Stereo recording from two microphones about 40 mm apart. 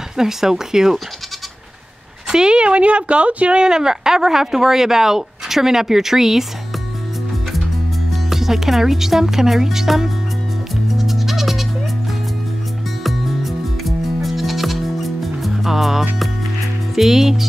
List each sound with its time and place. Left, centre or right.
0.2 s speech: centre
2.2 s speech: centre
3.6 s speech: centre
8.1 s speech: centre
10.9 s music: centre
13.0 s music: centre
16.9 s speech: centre